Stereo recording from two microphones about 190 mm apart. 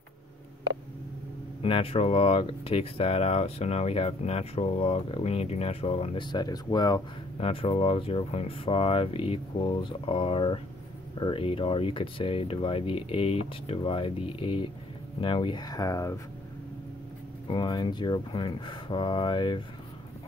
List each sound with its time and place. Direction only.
1.6 s speech: 30° left (ahead or behind)
17.5 s speech: 25° left (ahead or behind)